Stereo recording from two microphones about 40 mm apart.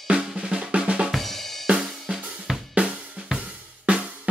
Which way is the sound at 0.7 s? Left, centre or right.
Right.